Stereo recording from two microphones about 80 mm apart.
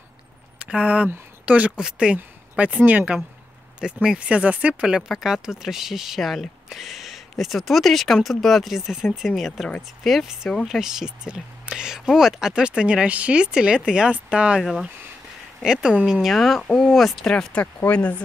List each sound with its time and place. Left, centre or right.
0.6 s speech: centre
3.8 s speech: centre
10.8 s speech: centre